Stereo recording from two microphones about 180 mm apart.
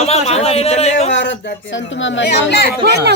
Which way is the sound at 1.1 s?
80° left.